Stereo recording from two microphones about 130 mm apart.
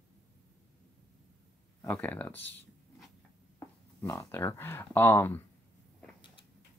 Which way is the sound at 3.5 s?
20° left (ahead or behind).